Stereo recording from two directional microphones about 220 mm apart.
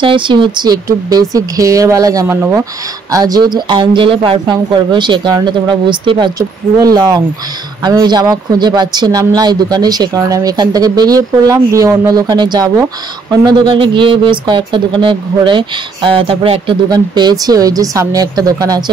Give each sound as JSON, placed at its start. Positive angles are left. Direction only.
{"t": 0.0, "sound": "speech", "side_deg": -20}